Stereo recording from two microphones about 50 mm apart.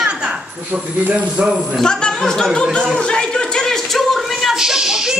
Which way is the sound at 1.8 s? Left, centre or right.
Centre.